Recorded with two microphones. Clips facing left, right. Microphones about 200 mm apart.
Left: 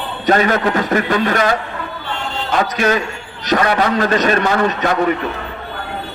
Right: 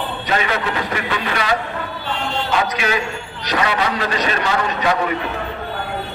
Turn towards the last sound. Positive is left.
turn(degrees=50)  # may be behind; listen again after turning